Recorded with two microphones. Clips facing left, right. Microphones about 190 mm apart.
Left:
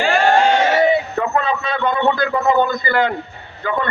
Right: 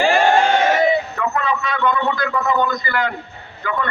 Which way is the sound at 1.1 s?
30° left (ahead or behind).